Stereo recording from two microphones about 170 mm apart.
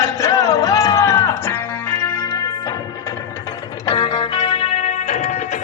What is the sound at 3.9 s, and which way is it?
Music, 30° left (ahead or behind).